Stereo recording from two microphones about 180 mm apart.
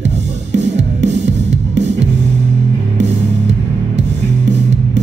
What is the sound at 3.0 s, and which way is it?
Music, 40° right (ahead or behind).